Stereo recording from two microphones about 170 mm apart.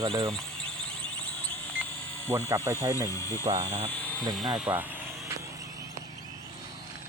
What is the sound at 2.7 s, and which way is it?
Speech, 15° right (ahead or behind).